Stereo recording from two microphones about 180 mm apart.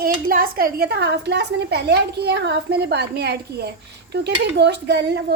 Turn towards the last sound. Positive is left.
turn(degrees=-70)  # may be behind; listen again after turning